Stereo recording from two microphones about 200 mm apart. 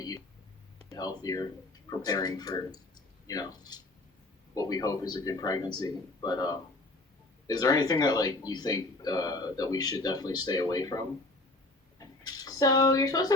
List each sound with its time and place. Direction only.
0.9 s speech: 20° left (ahead or behind)